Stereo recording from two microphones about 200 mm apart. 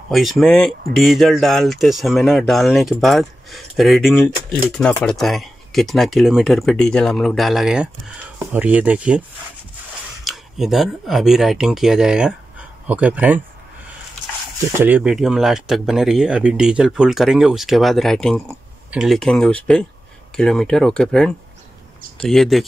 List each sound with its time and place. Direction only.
0.1 s speech: centre (ahead or behind)
10.2 s speech: centre (ahead or behind)
14.8 s speech: 5° right (ahead or behind)